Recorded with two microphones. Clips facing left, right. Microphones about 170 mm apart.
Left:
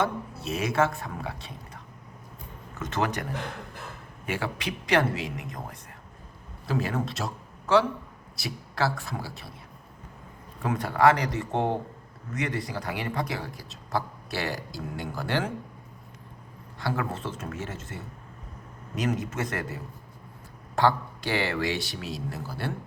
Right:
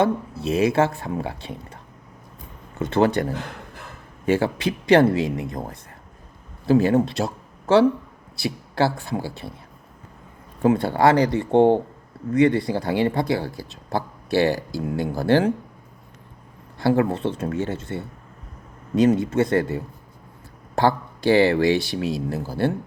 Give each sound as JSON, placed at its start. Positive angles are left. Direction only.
{"t": 0.0, "sound": "speech", "side_deg": -30}
{"t": 4.3, "sound": "speech", "side_deg": -30}
{"t": 8.4, "sound": "speech", "side_deg": -30}
{"t": 10.6, "sound": "speech", "side_deg": -30}
{"t": 16.7, "sound": "speech", "side_deg": -30}
{"t": 21.3, "sound": "speech", "side_deg": -30}